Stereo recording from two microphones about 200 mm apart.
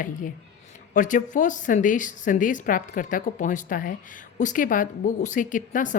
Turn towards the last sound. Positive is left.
turn(degrees=40)  # may be behind; listen again after turning